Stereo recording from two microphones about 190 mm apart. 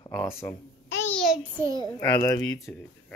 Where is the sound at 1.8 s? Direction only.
15° left (ahead or behind).